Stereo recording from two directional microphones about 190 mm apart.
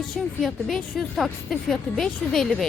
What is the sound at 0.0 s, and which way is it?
Speech, centre (ahead or behind).